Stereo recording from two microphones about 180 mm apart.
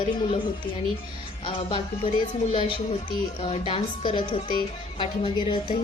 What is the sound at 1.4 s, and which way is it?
A woman's voice, 25° left (ahead or behind).